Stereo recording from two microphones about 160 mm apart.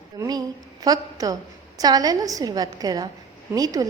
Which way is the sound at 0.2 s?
25° right (ahead or behind).